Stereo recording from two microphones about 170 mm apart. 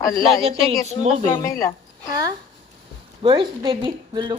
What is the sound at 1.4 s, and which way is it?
Speech, 20° left (ahead or behind).